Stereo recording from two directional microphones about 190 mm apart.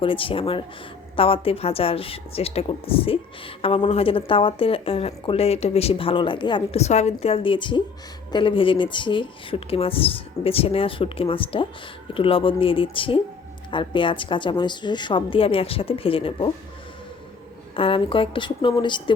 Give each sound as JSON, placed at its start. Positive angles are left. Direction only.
{"t": 0.0, "sound": "speech", "side_deg": 30}
{"t": 17.7, "sound": "speech", "side_deg": 30}